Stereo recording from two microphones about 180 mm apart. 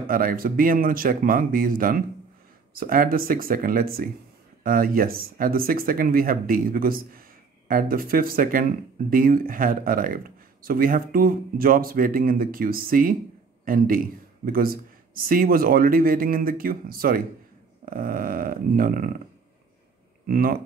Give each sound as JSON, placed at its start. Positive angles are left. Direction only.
{"t": 0.0, "sound": "speech", "side_deg": -50}
{"t": 20.2, "sound": "speech", "side_deg": -55}